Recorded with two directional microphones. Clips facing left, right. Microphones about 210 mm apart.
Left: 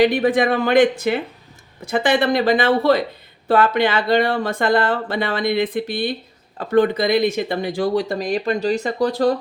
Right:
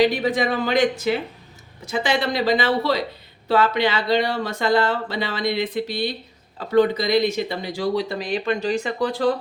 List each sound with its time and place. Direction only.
0.0 s speech: 55° left (ahead or behind)